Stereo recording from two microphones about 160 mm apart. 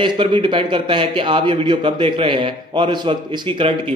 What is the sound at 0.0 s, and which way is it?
A man's voice, 35° right (ahead or behind).